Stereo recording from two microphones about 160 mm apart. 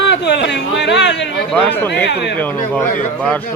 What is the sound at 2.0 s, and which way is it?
Speech, 90° left.